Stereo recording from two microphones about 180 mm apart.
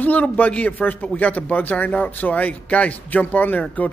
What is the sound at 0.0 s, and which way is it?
A man's voice, 10° left (ahead or behind).